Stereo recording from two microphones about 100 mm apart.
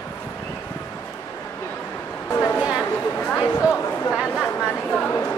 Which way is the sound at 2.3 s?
25° left (ahead or behind).